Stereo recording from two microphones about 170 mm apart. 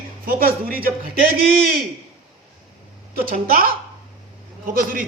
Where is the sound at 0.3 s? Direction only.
60° right (ahead or behind).